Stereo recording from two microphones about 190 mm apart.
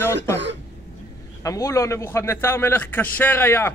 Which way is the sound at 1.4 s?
15° left (ahead or behind).